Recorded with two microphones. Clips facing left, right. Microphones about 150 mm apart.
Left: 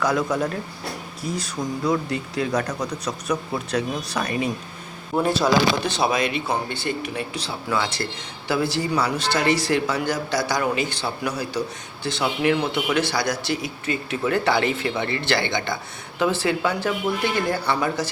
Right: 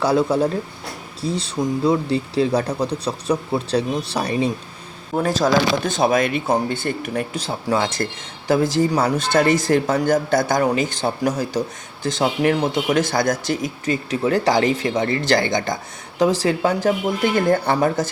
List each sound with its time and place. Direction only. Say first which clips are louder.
0.0 s speech: right 5 dB; 30° right (ahead or behind)
5.1 s speech: right 2 dB; 45° right (ahead or behind)